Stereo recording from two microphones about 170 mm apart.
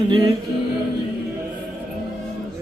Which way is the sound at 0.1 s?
30° right (ahead or behind).